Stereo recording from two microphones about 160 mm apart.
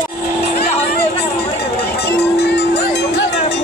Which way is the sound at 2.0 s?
90° left.